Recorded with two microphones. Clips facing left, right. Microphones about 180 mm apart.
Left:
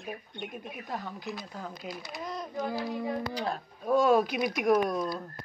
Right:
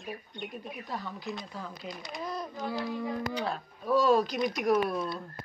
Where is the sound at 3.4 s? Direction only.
40° left (ahead or behind); by 4.4 s 55° left (ahead or behind).